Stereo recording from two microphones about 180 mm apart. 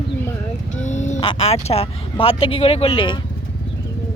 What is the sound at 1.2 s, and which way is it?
Speech, 30° left (ahead or behind).